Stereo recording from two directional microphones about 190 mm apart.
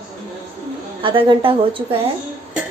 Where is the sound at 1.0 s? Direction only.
25° right (ahead or behind).